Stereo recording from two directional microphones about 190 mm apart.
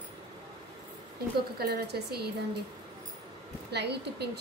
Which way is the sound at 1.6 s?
55° right (ahead or behind).